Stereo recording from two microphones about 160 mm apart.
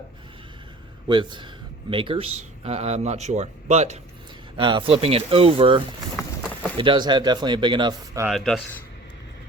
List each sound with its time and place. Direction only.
1.0 s speech: 30° right (ahead or behind)
4.5 s speech: 30° right (ahead or behind)
8.3 s speech: centre (ahead or behind)